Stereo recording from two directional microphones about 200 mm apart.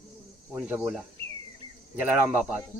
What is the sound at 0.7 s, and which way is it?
Speech, 5° right (ahead or behind).